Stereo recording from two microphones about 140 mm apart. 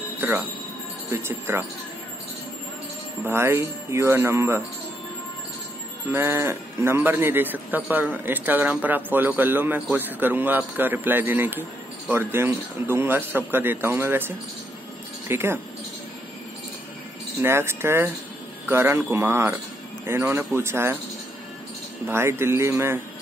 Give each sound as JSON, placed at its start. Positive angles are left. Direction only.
{"t": 0.2, "sound": "speech", "side_deg": -15}
{"t": 3.3, "sound": "speech", "side_deg": -15}
{"t": 6.1, "sound": "speech", "side_deg": -15}
{"t": 17.4, "sound": "speech", "side_deg": -15}
{"t": 22.0, "sound": "speech", "side_deg": -15}